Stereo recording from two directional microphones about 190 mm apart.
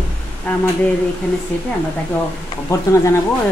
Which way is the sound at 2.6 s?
15° left (ahead or behind).